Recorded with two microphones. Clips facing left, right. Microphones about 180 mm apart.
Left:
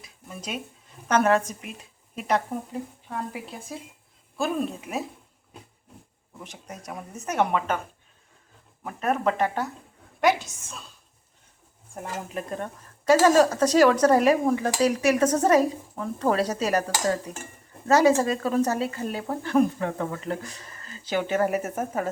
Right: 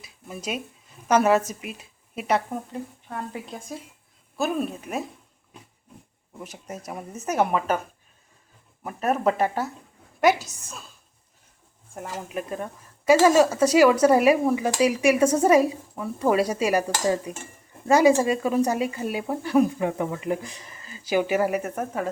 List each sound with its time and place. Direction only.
0.0 s a sound: 10° right (ahead or behind)
1.0 s speech: 10° right (ahead or behind)
3.3 s speech: 5° left (ahead or behind)
6.7 s speech: 5° right (ahead or behind)
8.8 s speech: 10° right (ahead or behind)
10.2 s a woman's voice: 40° right (ahead or behind)
10.5 s speech: centre (ahead or behind)
11.9 s speech: 5° right (ahead or behind)
21.5 s speech: 5° left (ahead or behind)